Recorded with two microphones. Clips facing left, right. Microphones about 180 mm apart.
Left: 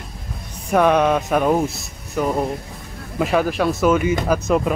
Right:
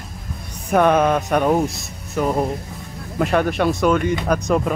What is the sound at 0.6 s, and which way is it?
Speech, centre (ahead or behind).